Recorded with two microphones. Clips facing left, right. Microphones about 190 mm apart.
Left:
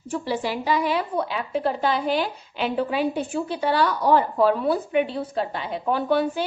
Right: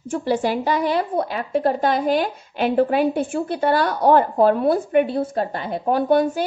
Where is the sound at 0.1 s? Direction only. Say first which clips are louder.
Right 5 dB; 50° right (ahead or behind).